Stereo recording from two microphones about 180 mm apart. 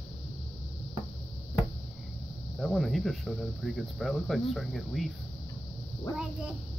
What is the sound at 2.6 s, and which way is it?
Speech, centre (ahead or behind).